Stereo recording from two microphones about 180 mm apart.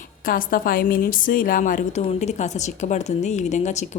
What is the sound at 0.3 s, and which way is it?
A woman's voice, 50° left (ahead or behind).